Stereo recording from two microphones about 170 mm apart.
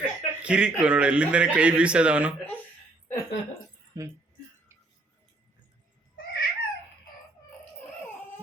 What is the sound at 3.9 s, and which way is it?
Speech, 20° right (ahead or behind).